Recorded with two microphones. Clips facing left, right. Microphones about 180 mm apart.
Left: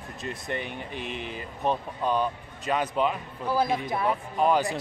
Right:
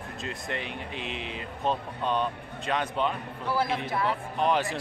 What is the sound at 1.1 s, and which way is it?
Speech, 80° right.